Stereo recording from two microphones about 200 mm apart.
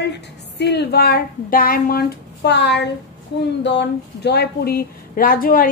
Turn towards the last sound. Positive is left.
turn(degrees=45)  # may be behind; listen again after turning